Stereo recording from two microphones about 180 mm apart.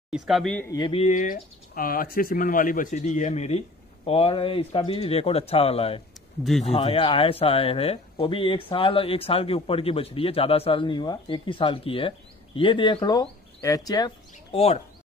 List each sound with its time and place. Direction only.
0.1 s speech: centre (ahead or behind)
0.7 s speech: 20° left (ahead or behind)
0.9 s speech: 40° left (ahead or behind); by 14.1 s 20° left (ahead or behind)
14.5 s speech: 35° left (ahead or behind)